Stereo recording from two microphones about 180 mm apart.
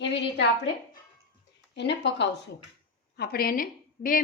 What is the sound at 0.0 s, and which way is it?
Speech, 75° left (ahead or behind).